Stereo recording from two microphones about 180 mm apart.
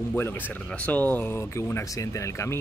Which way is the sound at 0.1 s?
10° left (ahead or behind).